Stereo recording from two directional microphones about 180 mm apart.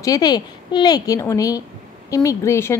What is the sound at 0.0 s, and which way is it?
A woman's voice, 20° left (ahead or behind).